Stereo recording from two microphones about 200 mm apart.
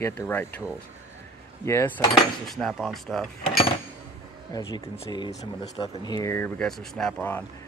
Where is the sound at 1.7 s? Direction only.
15° left (ahead or behind).